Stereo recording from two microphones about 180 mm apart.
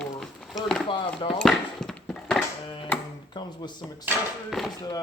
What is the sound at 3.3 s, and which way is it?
Speech, 25° left (ahead or behind).